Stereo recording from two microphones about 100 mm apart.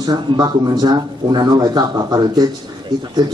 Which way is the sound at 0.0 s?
45° right (ahead or behind).